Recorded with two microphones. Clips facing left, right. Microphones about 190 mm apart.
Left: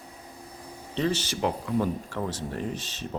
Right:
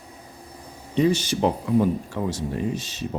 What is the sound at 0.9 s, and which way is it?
Speech, 10° right (ahead or behind).